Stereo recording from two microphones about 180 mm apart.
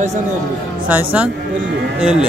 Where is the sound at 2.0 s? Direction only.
5° right (ahead or behind).